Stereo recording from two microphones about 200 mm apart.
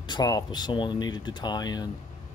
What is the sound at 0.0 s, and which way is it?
Speech, 20° left (ahead or behind).